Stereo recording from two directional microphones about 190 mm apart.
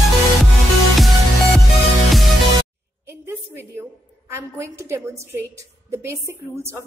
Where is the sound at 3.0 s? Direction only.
10° right (ahead or behind).